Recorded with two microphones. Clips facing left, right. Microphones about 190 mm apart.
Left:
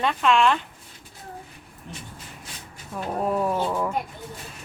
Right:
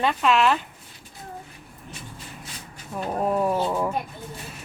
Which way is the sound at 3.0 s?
5° right (ahead or behind).